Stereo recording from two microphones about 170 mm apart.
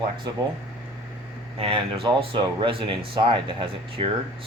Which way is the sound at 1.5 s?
30° right (ahead or behind).